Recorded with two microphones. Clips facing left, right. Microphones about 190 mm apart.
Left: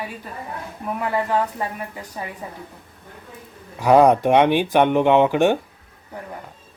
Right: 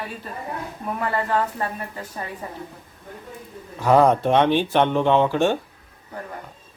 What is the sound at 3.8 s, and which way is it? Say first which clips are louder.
Speech: left 2 dB; 15° left (ahead or behind).